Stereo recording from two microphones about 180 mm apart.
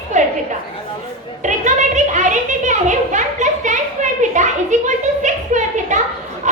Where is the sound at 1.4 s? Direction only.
40° right (ahead or behind).